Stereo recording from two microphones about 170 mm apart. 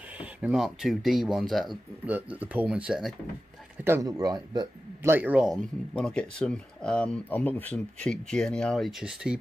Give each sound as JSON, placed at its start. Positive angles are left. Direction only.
{"t": 0.2, "sound": "speech", "side_deg": -5}
{"t": 3.8, "sound": "a man's voice", "side_deg": -15}
{"t": 5.1, "sound": "speech", "side_deg": -10}
{"t": 5.9, "sound": "speech", "side_deg": 5}